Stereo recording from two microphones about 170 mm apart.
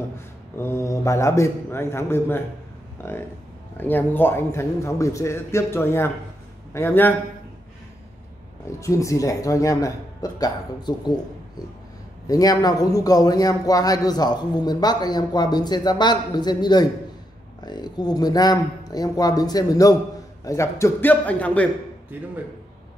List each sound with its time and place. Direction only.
0.6 s a man's voice: 15° left (ahead or behind)
8.7 s a man's voice: 20° left (ahead or behind)
12.3 s a man's voice: 20° left (ahead or behind)
22.1 s speech: 10° right (ahead or behind)